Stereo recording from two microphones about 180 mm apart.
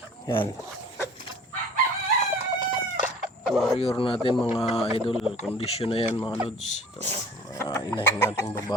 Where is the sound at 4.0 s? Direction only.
30° left (ahead or behind).